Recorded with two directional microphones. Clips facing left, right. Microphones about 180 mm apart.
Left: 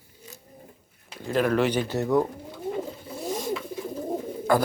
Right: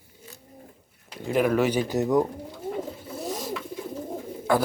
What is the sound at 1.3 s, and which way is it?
Speech, 10° right (ahead or behind).